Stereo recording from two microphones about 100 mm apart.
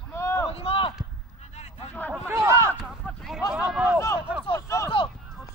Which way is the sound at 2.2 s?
30° right (ahead or behind).